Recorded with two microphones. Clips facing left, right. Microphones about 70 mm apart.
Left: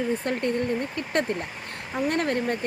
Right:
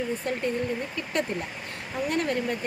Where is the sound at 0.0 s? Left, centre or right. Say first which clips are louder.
Left 3 dB; left.